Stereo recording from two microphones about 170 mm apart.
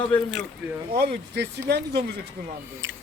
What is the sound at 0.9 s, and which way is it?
Speech, 75° right (ahead or behind).